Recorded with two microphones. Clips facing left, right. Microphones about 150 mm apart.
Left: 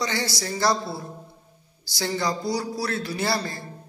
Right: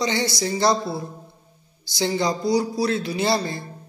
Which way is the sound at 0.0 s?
20° right (ahead or behind).